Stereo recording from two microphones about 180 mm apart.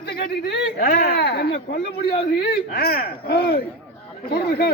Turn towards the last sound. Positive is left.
turn(degrees=60)  # may be behind; listen again after turning